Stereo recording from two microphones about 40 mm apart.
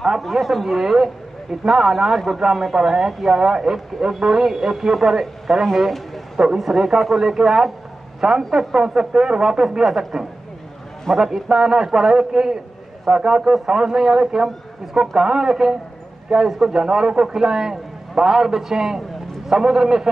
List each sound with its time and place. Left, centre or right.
0.2 s speech: centre
5.8 s a sound: centre
6.4 s speech: centre